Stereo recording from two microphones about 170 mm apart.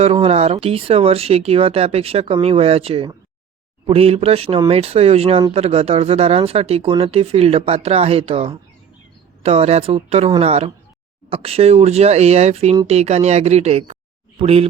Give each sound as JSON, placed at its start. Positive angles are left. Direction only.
{"t": 0.0, "sound": "speech", "side_deg": -35}